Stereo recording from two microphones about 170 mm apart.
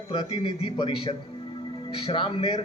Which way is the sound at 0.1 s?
35° left (ahead or behind).